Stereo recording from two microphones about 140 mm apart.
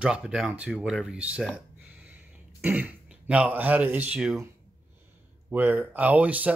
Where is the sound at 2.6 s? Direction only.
10° right (ahead or behind).